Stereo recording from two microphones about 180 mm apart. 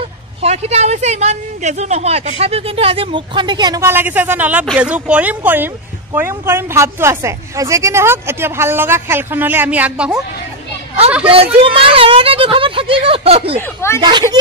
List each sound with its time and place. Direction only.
0.4 s speech: 35° right (ahead or behind); by 10.2 s 5° right (ahead or behind)
11.2 s speech: 30° right (ahead or behind)
13.6 s speech: 15° left (ahead or behind)
14.3 s speech: 25° right (ahead or behind)